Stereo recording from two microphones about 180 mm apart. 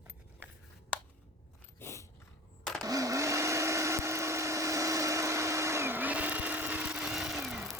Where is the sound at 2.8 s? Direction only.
20° right (ahead or behind).